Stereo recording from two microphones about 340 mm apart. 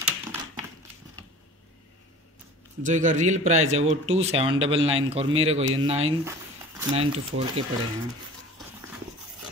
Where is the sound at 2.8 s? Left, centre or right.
Right.